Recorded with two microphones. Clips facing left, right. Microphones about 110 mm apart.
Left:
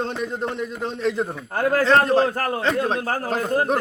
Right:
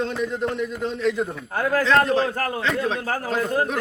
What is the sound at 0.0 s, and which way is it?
A man's voice, 35° left (ahead or behind).